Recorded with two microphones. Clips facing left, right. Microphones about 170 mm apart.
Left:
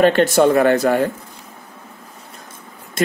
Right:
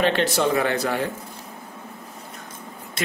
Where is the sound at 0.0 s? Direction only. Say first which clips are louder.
Left 8 dB; 50° left (ahead or behind).